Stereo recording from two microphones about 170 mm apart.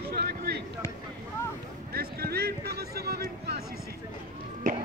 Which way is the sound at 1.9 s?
65° right (ahead or behind).